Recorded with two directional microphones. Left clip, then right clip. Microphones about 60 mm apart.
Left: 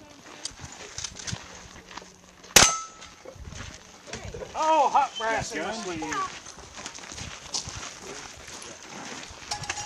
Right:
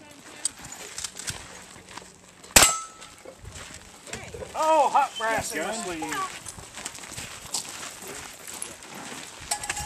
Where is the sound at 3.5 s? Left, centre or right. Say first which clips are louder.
Even; centre.